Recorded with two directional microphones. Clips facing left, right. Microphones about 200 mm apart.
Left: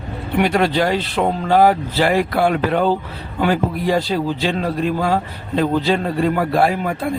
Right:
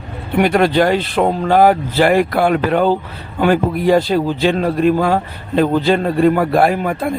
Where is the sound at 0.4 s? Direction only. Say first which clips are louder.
Right 4 dB; 50° right (ahead or behind).